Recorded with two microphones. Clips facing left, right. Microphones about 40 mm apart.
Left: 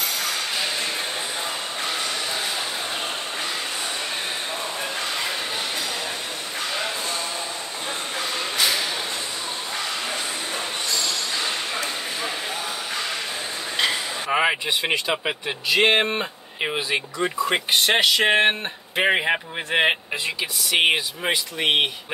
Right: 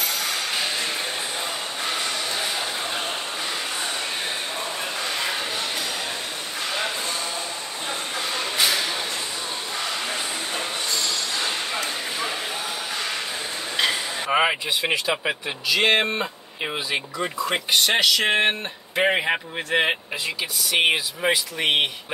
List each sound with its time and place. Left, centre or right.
8.5 s a sound: centre
14.3 s vehicle: centre
14.9 s speech: centre
15.7 s speech: left
17.6 s speech: left; by 21.8 s centre